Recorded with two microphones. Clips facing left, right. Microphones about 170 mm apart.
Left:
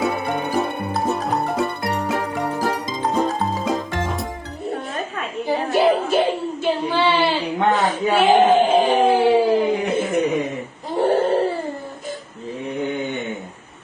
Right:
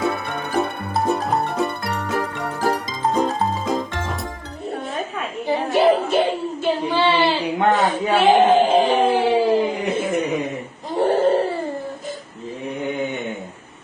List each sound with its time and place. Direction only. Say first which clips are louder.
0.1 s music: left 2 dB; 20° left (ahead or behind)
0.9 s music: right 3 dB; centre (ahead or behind)
1.8 s music: left 3 dB; 25° left (ahead or behind)
3.2 s music: even; 5° left (ahead or behind)
4.7 s a sound: right 1 dB; centre (ahead or behind)